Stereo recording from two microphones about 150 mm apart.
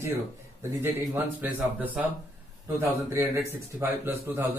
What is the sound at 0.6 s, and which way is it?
A man's voice, 15° right (ahead or behind).